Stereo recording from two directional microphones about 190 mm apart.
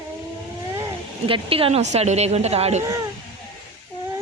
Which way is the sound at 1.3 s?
30° right (ahead or behind).